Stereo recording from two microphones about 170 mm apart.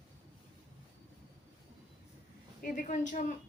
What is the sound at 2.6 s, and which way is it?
Speech, 50° left (ahead or behind).